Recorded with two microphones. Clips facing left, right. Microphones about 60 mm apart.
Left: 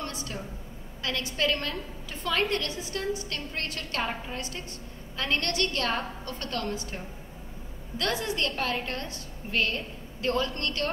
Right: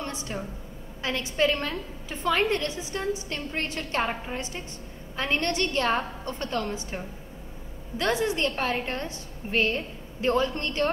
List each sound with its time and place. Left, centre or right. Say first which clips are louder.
0.0 s a sound: right 2 dB; right
1.0 s a woman's voice: right 3 dB; right
8.0 s a woman's voice: right 4 dB; right